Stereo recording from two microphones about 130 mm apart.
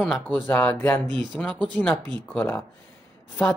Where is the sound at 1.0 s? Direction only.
35° right (ahead or behind).